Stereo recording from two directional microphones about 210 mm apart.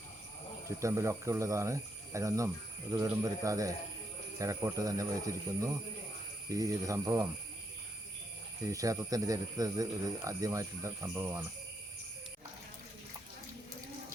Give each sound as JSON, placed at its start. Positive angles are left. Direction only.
{"t": 0.8, "sound": "speech", "side_deg": -15}
{"t": 8.6, "sound": "speech", "side_deg": -15}